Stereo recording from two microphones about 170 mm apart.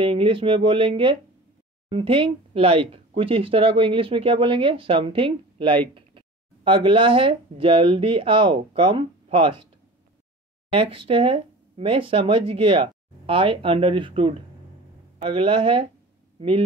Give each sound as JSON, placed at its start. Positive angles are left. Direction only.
{"t": 0.0, "sound": "speech", "side_deg": -30}
{"t": 10.7, "sound": "speech", "side_deg": -30}